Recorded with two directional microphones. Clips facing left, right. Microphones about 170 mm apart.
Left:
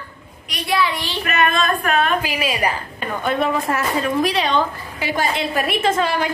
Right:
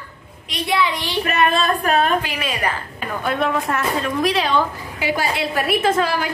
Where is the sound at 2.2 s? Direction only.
10° left (ahead or behind).